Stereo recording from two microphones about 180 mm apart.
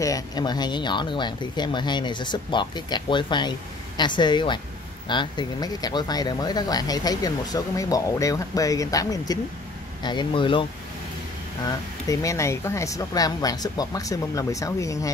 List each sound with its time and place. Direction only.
0.0 s speech: 20° left (ahead or behind)
12.1 s speech: 15° left (ahead or behind)